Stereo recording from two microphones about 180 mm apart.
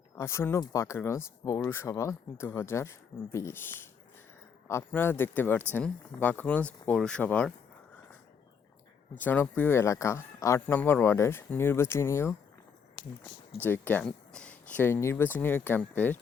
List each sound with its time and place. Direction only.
0.2 s speech: 15° left (ahead or behind)
9.1 s speech: 10° left (ahead or behind)
13.6 s speech: 10° left (ahead or behind)